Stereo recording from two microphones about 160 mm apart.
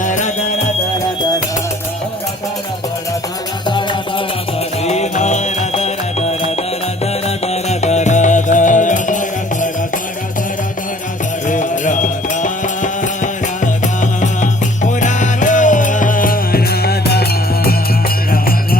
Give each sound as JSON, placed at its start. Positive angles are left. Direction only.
{"t": 0.0, "sound": "music", "side_deg": 50}
{"t": 4.8, "sound": "music", "side_deg": 45}
{"t": 11.4, "sound": "music", "side_deg": 50}
{"t": 18.3, "sound": "music", "side_deg": 65}